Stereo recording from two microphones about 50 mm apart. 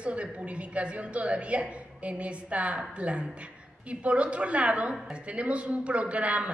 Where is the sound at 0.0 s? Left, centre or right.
Right.